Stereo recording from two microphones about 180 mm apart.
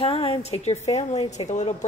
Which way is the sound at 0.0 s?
30° left (ahead or behind).